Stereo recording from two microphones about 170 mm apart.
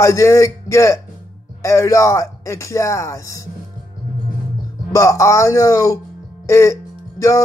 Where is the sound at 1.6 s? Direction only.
20° left (ahead or behind).